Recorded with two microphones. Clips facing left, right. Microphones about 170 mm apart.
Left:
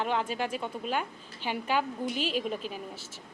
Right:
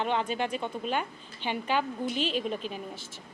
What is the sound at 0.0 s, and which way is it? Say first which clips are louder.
A woman's voice: right 1 dB; 5° left (ahead or behind).